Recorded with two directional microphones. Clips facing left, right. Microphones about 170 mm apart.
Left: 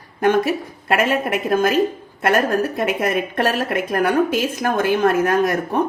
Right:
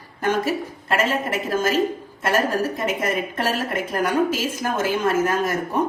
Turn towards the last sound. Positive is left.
turn(degrees=60)  # may be behind; listen again after turning